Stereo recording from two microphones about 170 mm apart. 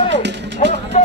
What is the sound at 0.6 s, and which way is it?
Speech, 45° left (ahead or behind).